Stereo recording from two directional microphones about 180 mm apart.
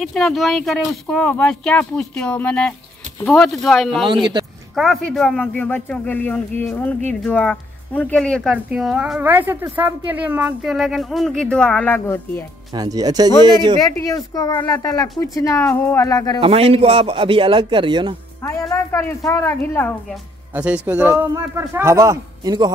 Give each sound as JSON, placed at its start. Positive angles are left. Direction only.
{"t": 0.0, "sound": "speech", "side_deg": 0}
{"t": 4.0, "sound": "a man's voice", "side_deg": -25}
{"t": 4.7, "sound": "speech", "side_deg": 0}
{"t": 12.7, "sound": "a man's voice", "side_deg": -20}
{"t": 13.8, "sound": "speech", "side_deg": 20}
{"t": 16.3, "sound": "a man's voice", "side_deg": -30}
{"t": 18.4, "sound": "speech", "side_deg": 15}
{"t": 20.5, "sound": "a man's voice", "side_deg": -10}